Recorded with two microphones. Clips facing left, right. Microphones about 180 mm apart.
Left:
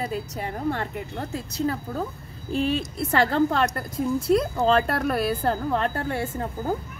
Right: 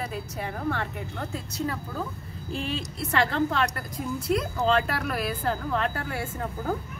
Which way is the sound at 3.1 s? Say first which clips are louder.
Left 4 dB; 40° left (ahead or behind).